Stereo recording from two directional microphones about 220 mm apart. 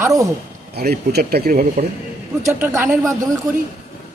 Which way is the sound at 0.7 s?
45° right (ahead or behind).